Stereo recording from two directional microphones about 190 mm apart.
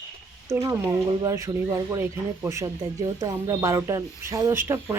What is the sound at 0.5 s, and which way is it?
A woman's voice, 15° right (ahead or behind).